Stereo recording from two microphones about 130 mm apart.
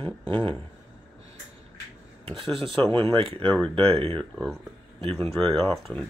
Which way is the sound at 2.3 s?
45° right (ahead or behind).